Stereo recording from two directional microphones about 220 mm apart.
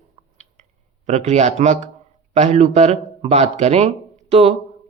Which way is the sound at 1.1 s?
30° right (ahead or behind).